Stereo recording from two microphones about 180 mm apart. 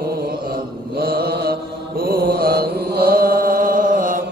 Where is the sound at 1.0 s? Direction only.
60° right (ahead or behind).